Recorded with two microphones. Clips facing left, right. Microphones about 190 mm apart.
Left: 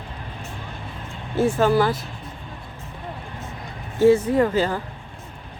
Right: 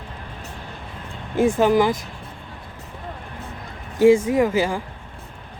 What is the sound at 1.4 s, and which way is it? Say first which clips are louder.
Speech: right 2 dB; 15° right (ahead or behind).